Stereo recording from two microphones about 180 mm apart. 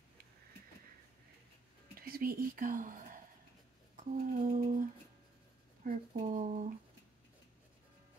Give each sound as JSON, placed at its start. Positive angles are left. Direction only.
{"t": 2.0, "sound": "speech", "side_deg": -55}
{"t": 3.9, "sound": "humming", "side_deg": -45}
{"t": 5.9, "sound": "speech", "side_deg": -45}